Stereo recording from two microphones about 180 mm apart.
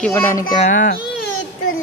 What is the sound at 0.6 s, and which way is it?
Speech, 45° left (ahead or behind).